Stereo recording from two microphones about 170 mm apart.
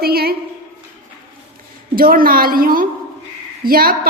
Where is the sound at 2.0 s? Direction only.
60° right (ahead or behind).